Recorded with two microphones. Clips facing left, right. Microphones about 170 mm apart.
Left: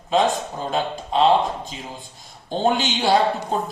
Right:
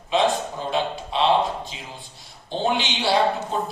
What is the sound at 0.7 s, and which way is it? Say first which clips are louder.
A man's voice: left 1 dB; 45° left (ahead or behind).